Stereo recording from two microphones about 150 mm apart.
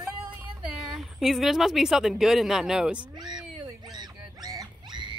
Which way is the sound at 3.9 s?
25° right (ahead or behind).